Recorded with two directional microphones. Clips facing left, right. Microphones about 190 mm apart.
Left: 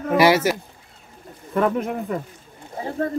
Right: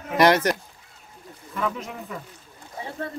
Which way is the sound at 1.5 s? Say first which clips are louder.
Left 8 dB; 55° left (ahead or behind).